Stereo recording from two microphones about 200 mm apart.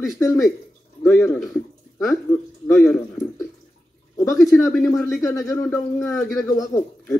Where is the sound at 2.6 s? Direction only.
10° left (ahead or behind).